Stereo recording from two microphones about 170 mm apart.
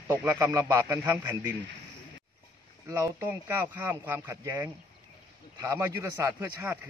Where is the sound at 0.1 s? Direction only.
15° right (ahead or behind).